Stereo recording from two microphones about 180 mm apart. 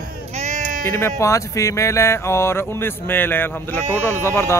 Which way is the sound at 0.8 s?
15° left (ahead or behind).